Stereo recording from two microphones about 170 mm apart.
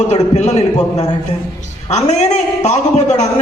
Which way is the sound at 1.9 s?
45° left (ahead or behind).